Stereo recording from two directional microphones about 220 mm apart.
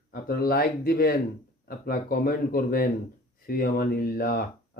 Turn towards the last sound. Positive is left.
turn(degrees=45)  # may be behind; listen again after turning